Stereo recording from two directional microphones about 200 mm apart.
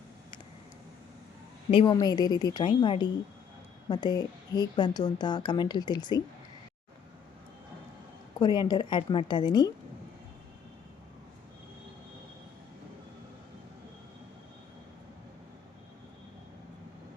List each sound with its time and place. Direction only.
1.7 s a woman's voice: 20° left (ahead or behind)
8.4 s a woman's voice: 20° left (ahead or behind)